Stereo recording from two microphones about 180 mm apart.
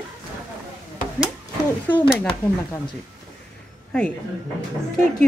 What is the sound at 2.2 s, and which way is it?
Speech, 10° left (ahead or behind).